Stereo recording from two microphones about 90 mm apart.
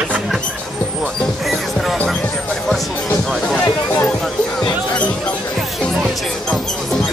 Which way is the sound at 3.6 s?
45° left (ahead or behind).